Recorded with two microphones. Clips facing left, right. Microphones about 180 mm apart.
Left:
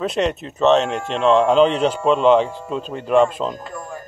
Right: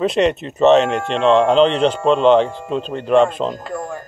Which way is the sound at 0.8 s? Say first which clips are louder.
Right 4 dB; 70° right (ahead or behind).